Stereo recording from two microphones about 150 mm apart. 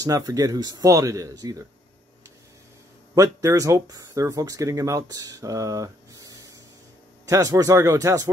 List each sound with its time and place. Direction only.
0.0 s speech: 25° right (ahead or behind)
3.2 s speech: 20° right (ahead or behind)